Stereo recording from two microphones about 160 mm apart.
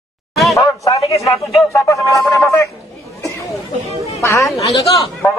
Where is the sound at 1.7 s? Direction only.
20° left (ahead or behind).